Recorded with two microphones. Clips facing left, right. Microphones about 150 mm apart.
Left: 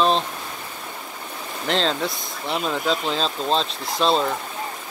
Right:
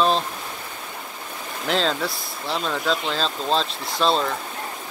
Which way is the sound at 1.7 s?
Centre (ahead or behind).